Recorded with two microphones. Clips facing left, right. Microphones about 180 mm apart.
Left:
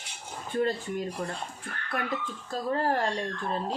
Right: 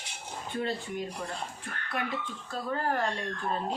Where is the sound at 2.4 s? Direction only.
35° left (ahead or behind).